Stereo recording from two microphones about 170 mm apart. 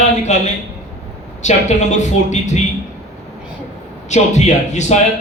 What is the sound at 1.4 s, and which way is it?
A man's voice, 45° left (ahead or behind).